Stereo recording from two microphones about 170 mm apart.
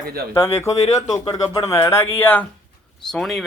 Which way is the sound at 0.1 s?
65° right (ahead or behind).